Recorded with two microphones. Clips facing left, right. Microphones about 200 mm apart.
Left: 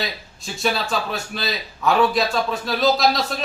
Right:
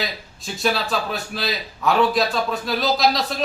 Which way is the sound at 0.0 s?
Centre (ahead or behind).